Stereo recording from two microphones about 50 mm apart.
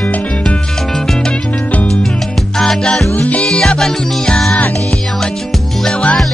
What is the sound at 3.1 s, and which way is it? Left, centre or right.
Music, left.